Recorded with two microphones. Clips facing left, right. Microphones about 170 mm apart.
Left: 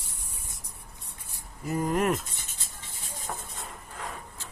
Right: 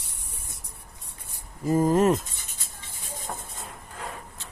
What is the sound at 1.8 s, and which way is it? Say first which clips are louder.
Speech: right 5 dB; 30° right (ahead or behind).